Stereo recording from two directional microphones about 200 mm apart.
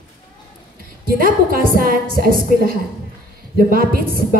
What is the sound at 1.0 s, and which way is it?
A woman's voice, 45° right (ahead or behind).